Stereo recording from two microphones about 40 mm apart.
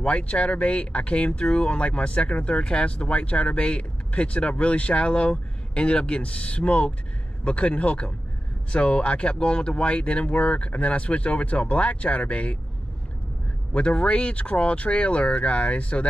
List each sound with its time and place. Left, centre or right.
0.0 s speech: left
13.7 s speech: left